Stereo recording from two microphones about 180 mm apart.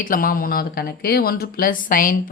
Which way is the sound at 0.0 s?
50° left (ahead or behind).